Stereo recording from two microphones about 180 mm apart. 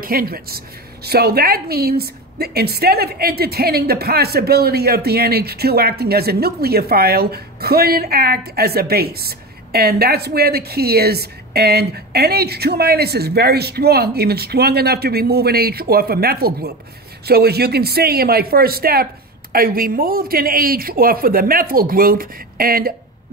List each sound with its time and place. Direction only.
0.0 s a woman's voice: 55° right (ahead or behind)